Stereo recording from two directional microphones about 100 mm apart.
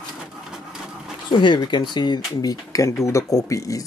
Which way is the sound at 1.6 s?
50° left (ahead or behind).